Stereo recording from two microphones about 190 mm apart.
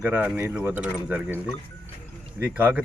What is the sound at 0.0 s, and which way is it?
Speech, 10° right (ahead or behind).